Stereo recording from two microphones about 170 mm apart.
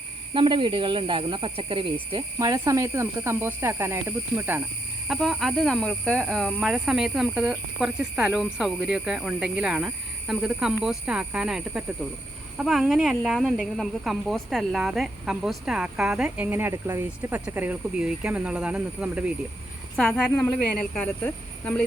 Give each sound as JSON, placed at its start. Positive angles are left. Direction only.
{"t": 0.3, "sound": "speech", "side_deg": -30}
{"t": 5.0, "sound": "speech", "side_deg": 0}
{"t": 20.0, "sound": "a woman's voice", "side_deg": 5}